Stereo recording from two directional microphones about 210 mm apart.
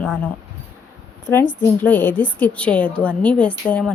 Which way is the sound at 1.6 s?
10° left (ahead or behind).